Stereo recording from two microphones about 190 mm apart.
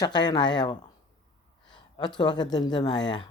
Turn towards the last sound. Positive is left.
turn(degrees=25)  # may be behind; listen again after turning